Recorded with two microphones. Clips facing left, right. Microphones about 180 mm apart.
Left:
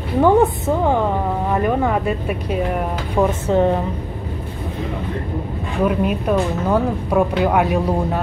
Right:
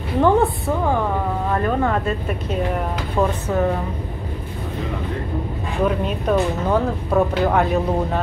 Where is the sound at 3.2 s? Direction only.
25° left (ahead or behind).